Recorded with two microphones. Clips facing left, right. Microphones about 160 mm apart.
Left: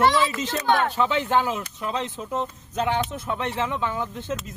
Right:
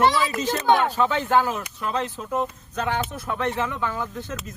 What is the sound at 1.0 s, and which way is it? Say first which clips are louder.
Speech: right 1 dB; 20° left (ahead or behind).